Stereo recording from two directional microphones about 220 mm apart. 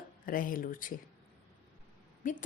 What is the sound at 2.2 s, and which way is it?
Speech, 35° left (ahead or behind).